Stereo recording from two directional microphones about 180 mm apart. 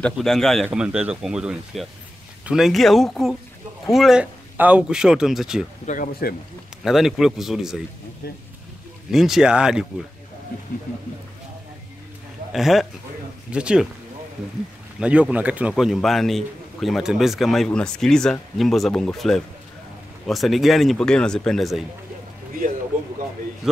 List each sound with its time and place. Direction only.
0.0 s a man's voice: centre (ahead or behind)
5.9 s speech: 50° left (ahead or behind)
6.8 s a man's voice: centre (ahead or behind)
9.1 s a man's voice: centre (ahead or behind)
12.5 s a man's voice: centre (ahead or behind)
15.0 s a man's voice: 5° right (ahead or behind)
23.6 s a man's voice: 5° right (ahead or behind)